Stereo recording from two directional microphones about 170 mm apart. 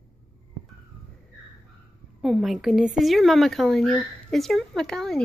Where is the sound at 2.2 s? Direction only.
Centre (ahead or behind).